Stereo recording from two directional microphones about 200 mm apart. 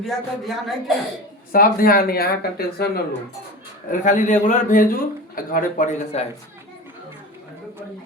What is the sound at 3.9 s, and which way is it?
A man's voice, 40° left (ahead or behind).